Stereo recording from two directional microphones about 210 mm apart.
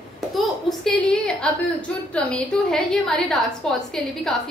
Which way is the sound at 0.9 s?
5° left (ahead or behind).